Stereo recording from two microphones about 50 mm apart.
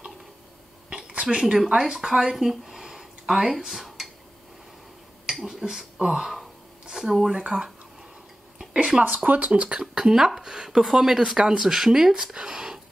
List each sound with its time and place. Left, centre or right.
0.8 s a sound: right
1.4 s speech: centre
3.8 s dishes: centre
5.3 s speech: centre
7.3 s speech: centre
8.7 s speech: right